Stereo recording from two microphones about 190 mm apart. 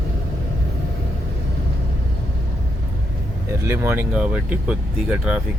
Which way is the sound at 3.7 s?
10° right (ahead or behind).